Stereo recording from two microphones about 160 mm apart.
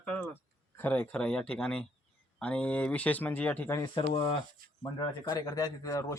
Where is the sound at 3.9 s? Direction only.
35° left (ahead or behind).